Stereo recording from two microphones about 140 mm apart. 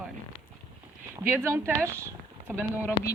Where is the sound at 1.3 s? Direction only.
20° right (ahead or behind).